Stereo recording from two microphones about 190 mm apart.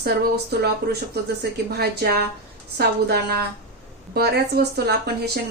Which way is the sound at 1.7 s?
55° right (ahead or behind).